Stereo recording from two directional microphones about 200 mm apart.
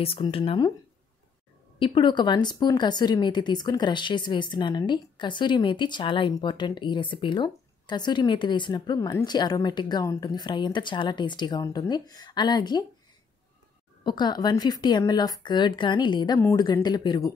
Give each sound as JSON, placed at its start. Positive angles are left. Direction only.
{"t": 0.0, "sound": "speech", "side_deg": 30}
{"t": 1.8, "sound": "speech", "side_deg": 25}
{"t": 14.0, "sound": "speech", "side_deg": 20}